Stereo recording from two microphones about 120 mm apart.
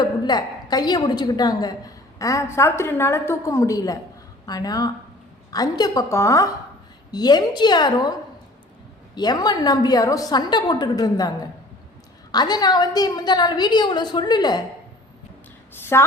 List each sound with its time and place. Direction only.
0.0 s a woman's voice: 35° left (ahead or behind)
9.1 s a woman's voice: 35° left (ahead or behind)
12.3 s a woman's voice: 35° left (ahead or behind)
15.7 s a woman's voice: 20° left (ahead or behind)